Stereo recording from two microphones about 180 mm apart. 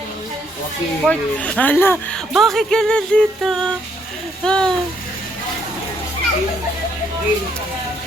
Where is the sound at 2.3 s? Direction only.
Centre (ahead or behind).